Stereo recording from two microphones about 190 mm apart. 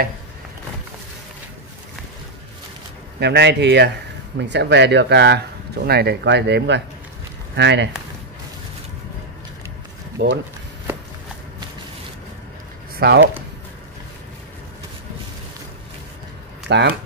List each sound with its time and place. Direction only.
3.2 s speech: 65° right (ahead or behind)
10.2 s speech: 65° right (ahead or behind)
12.9 s speech: 55° right (ahead or behind)
16.6 s speech: 65° right (ahead or behind)